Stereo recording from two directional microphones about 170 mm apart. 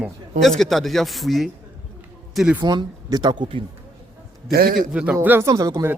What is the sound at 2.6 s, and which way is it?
Speech, 25° right (ahead or behind).